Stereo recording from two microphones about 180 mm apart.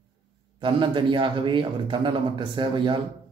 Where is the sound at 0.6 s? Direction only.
25° right (ahead or behind).